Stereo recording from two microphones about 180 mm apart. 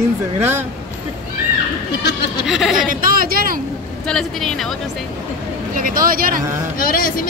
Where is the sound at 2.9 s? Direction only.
50° right (ahead or behind).